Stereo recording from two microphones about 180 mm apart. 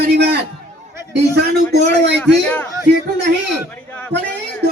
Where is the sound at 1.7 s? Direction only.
70° right (ahead or behind).